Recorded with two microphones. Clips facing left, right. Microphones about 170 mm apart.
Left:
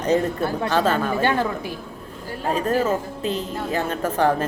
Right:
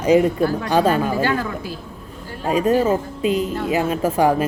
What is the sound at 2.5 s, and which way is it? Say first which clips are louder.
A woman's voice: right 4 dB; 10° right (ahead or behind).